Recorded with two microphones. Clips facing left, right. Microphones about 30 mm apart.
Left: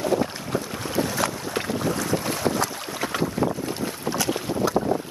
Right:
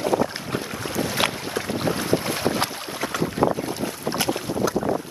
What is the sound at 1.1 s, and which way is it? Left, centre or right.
Boat, right.